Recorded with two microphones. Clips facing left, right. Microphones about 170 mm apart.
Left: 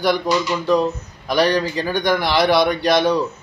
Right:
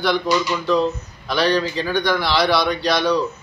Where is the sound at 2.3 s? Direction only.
50° left (ahead or behind).